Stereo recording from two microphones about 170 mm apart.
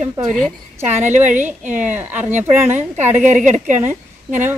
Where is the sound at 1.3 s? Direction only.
45° right (ahead or behind).